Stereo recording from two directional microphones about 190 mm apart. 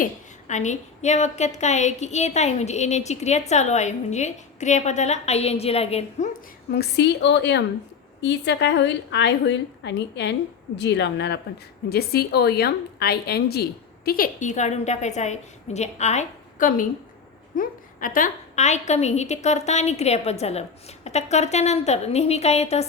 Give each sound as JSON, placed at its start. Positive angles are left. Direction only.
{"t": 0.0, "sound": "a woman's voice", "side_deg": 40}
{"t": 6.7, "sound": "a woman's voice", "side_deg": 60}